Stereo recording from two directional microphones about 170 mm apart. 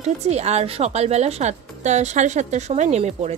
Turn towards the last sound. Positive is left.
turn(degrees=-35)  # may be behind; listen again after turning